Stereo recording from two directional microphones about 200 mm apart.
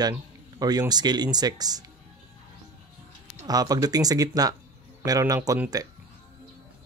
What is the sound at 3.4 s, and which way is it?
Speech, 20° right (ahead or behind).